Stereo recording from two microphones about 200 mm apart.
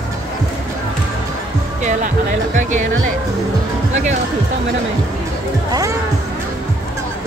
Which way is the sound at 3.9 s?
35° right (ahead or behind).